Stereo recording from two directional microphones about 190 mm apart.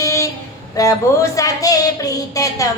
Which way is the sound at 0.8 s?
15° left (ahead or behind).